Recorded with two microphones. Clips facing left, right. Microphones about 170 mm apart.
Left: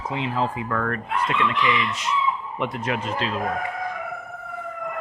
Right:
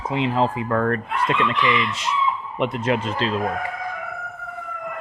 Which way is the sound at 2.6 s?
25° right (ahead or behind).